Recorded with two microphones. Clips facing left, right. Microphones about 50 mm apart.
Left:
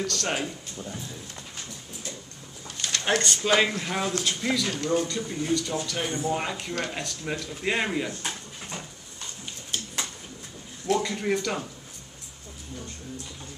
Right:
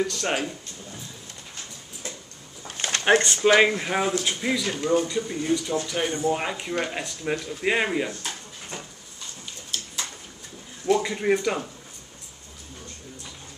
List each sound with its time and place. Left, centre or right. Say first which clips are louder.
0.0 s speech: right 3 dB; centre
2.8 s a sound: right 6 dB; right
3.2 s speech: right 3 dB; centre
10.9 s speech: right 4 dB; centre